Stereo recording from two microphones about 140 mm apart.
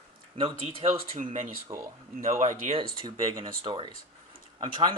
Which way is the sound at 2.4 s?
60° right (ahead or behind).